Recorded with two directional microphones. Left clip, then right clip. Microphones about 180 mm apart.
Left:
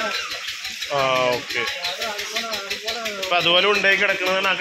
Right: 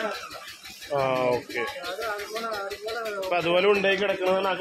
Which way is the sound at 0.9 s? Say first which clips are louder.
Left 4 dB; 5° right (ahead or behind).